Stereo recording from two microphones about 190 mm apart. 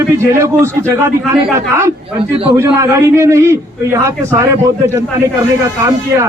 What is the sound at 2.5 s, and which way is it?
A man's voice, 15° right (ahead or behind).